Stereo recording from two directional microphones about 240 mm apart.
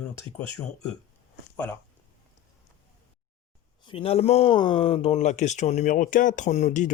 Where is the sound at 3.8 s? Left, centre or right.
Left.